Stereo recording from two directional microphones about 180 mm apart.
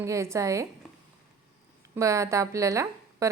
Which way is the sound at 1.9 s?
15° right (ahead or behind).